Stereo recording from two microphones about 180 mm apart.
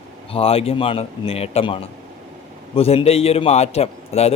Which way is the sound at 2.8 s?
35° left (ahead or behind).